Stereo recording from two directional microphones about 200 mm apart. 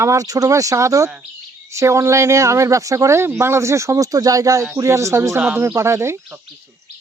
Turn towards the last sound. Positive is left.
turn(degrees=-15)  # may be behind; listen again after turning